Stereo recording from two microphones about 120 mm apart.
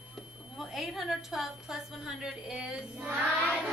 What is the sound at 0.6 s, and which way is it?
A woman's voice, centre (ahead or behind).